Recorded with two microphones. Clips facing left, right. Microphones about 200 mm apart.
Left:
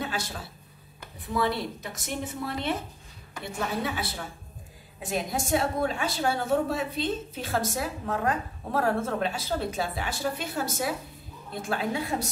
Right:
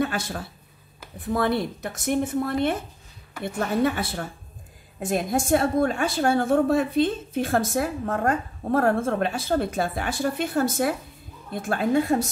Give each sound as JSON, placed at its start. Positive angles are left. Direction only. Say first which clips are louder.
{"t": 0.0, "sound": "a woman's voice", "louder": "right 7 dB", "side_deg": -50}